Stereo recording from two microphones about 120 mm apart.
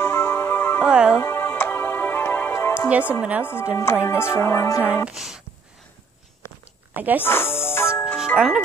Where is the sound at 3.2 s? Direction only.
10° right (ahead or behind).